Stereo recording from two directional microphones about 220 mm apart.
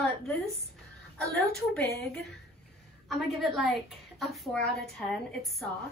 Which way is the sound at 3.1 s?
Centre (ahead or behind).